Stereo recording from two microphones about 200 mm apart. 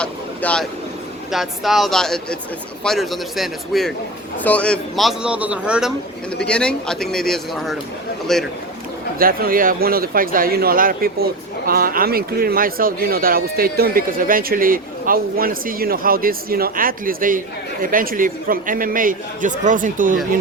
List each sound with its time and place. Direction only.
0.0 s vehicle: 5° left (ahead or behind)
1.3 s a man's voice: centre (ahead or behind)
6.3 s a man's voice: 5° left (ahead or behind)
9.1 s speech: 45° right (ahead or behind)